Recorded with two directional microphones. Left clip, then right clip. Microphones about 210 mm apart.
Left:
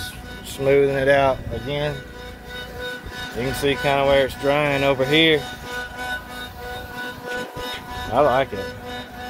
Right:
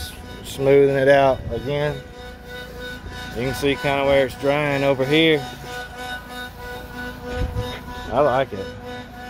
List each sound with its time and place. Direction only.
0.6 s speech: 35° right (ahead or behind)
3.3 s speech: 25° right (ahead or behind)
8.1 s speech: 15° right (ahead or behind)